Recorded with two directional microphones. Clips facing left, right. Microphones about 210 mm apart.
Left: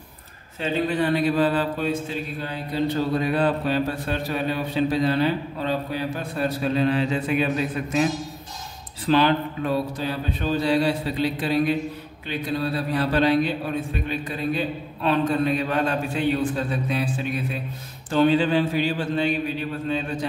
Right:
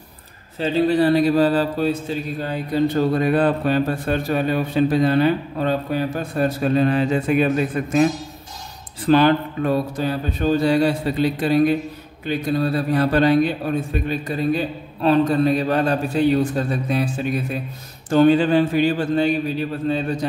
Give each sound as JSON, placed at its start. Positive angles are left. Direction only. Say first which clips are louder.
{"t": 0.6, "sound": "a man's voice", "louder": "right 6 dB", "side_deg": -35}